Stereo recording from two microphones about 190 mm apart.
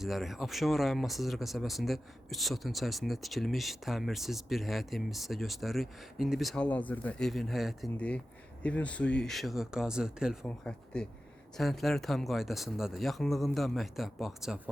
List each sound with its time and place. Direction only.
0.0 s speech: centre (ahead or behind)